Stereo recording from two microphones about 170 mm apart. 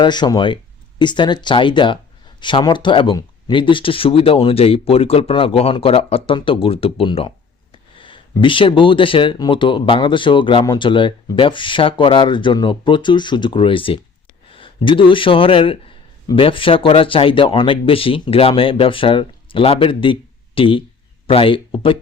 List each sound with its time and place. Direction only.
0.0 s speech: 25° left (ahead or behind)